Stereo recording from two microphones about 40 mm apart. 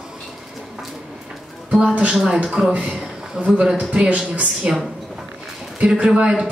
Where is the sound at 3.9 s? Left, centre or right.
Right.